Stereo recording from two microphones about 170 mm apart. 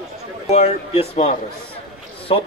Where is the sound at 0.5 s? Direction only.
40° left (ahead or behind).